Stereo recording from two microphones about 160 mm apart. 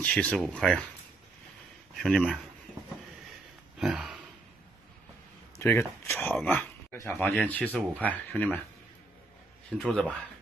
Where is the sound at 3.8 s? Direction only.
5° right (ahead or behind).